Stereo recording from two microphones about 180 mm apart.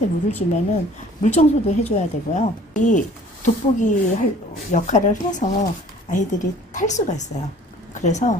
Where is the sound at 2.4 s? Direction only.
40° left (ahead or behind).